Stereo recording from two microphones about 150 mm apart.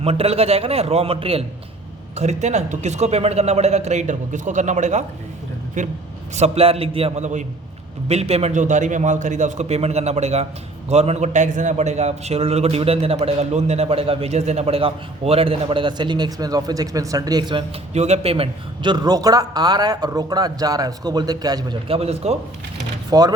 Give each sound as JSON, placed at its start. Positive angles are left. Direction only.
{"t": 0.0, "sound": "a man's voice", "side_deg": -40}
{"t": 6.3, "sound": "a man's voice", "side_deg": -45}
{"t": 17.9, "sound": "a man's voice", "side_deg": -45}
{"t": 21.8, "sound": "a man's voice", "side_deg": -40}
{"t": 23.1, "sound": "a man's voice", "side_deg": -25}